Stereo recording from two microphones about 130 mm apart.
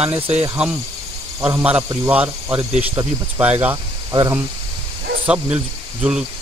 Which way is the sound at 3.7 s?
30° right (ahead or behind).